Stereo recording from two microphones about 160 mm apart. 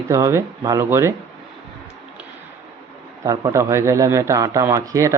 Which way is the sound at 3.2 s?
20° right (ahead or behind).